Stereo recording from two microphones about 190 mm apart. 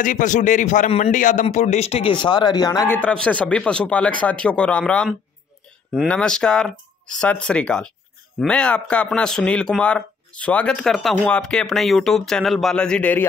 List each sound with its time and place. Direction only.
0.0 s a man's voice: 40° left (ahead or behind); by 3.0 s 20° left (ahead or behind)
3.0 s a man's voice: 5° left (ahead or behind)